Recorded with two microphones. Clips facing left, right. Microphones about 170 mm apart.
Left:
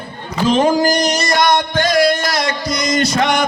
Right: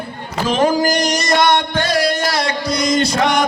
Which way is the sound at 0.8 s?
10° right (ahead or behind).